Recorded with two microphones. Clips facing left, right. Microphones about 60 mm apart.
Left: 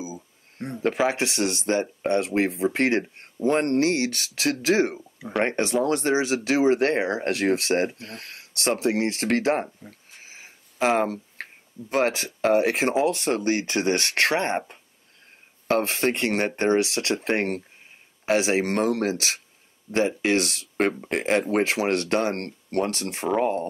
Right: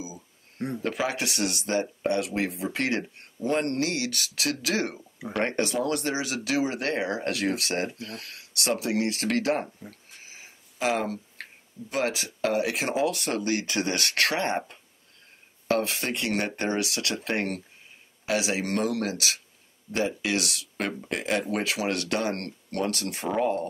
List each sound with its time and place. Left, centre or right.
0.8 s speech: left
9.8 s a sound: left
11.9 s speech: left
15.7 s speech: left